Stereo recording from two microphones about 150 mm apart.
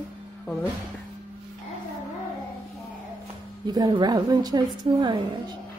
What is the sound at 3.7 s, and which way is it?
A woman's voice, 30° right (ahead or behind).